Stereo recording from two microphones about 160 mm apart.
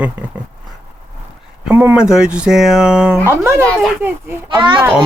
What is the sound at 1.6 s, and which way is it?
A child's voice, 15° right (ahead or behind).